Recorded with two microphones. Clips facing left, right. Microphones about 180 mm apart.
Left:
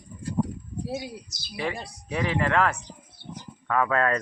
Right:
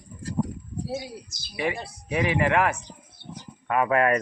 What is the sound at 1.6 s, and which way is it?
Speech, 15° right (ahead or behind).